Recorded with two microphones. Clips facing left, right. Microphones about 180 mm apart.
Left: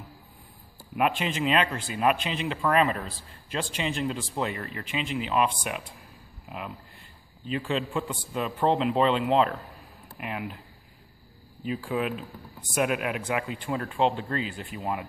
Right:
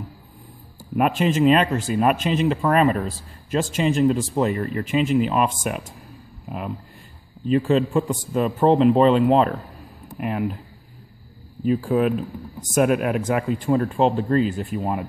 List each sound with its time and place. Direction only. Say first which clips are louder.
0.9 s speech: right 7 dB; 45° right (ahead or behind)
11.6 s speech: right 9 dB; 45° right (ahead or behind)